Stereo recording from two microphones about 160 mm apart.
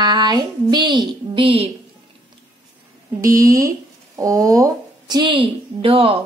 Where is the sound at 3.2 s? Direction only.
20° right (ahead or behind).